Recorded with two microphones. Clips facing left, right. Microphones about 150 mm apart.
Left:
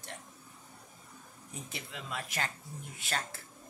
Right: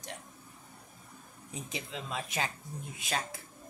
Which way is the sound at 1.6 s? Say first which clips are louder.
Right 4 dB; 20° right (ahead or behind).